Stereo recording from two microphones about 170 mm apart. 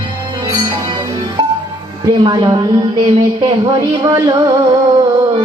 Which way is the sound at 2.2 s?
25° right (ahead or behind).